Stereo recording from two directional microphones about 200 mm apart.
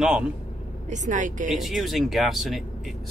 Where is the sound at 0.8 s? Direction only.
40° right (ahead or behind).